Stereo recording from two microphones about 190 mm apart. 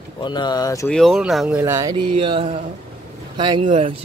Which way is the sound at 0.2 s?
25° left (ahead or behind).